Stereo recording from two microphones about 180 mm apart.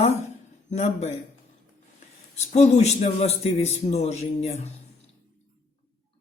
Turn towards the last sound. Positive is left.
turn(degrees=35)  # may be behind; listen again after turning